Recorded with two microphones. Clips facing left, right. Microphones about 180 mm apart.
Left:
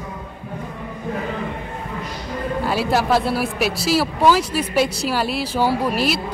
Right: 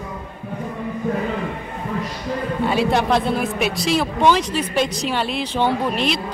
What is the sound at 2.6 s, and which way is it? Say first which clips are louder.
A woman's voice: right 2 dB; 5° left (ahead or behind).